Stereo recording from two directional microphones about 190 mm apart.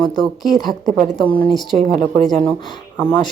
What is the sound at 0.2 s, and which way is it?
Speech, centre (ahead or behind).